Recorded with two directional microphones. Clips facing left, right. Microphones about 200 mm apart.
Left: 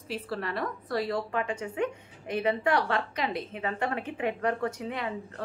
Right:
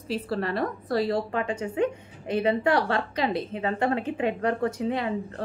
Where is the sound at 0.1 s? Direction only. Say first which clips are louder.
Right 5 dB; 35° right (ahead or behind).